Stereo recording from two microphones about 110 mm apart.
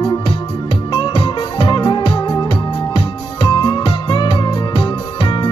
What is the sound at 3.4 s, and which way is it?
Music, 45° left (ahead or behind).